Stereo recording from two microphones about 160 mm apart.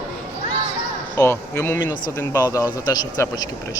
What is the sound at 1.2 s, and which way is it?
Speech, 15° left (ahead or behind).